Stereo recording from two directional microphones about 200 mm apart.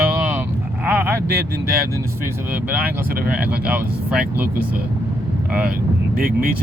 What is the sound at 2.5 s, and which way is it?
Speech, 10° right (ahead or behind).